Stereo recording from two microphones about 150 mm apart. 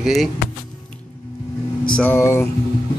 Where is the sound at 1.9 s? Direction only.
10° left (ahead or behind).